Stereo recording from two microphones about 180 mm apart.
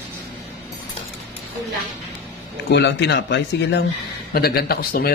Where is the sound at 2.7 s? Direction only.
70° left (ahead or behind).